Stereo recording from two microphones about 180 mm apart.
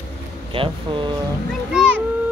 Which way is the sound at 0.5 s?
30° right (ahead or behind).